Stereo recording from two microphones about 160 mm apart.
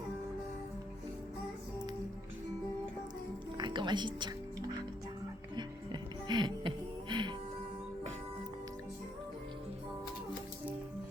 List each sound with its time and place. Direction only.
3.6 s music: 30° right (ahead or behind)
5.5 s music: 30° right (ahead or behind)